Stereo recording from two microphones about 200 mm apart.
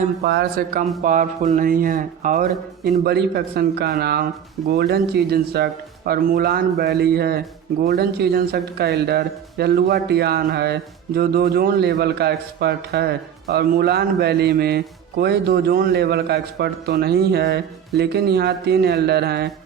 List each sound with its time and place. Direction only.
0.3 s speech: 55° right (ahead or behind)
1.0 s speech: 40° right (ahead or behind)
2.5 s speech: centre (ahead or behind)
3.0 s speech: 55° right (ahead or behind)